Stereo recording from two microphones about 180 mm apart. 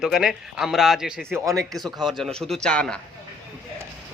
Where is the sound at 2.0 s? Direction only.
Centre (ahead or behind).